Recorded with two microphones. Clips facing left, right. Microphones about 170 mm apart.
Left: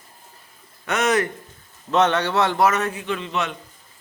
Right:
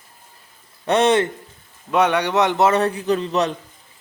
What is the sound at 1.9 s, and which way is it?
A man's voice, 10° right (ahead or behind).